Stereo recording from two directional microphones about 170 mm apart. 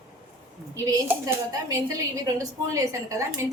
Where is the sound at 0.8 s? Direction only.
15° right (ahead or behind).